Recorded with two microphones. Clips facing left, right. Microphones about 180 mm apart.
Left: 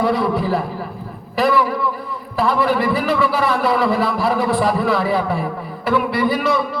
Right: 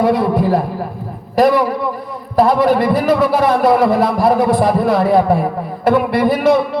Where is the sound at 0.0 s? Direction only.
50° right (ahead or behind).